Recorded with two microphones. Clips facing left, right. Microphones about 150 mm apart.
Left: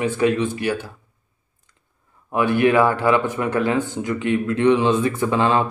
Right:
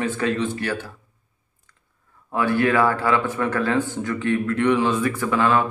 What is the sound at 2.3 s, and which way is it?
Speech, 20° left (ahead or behind).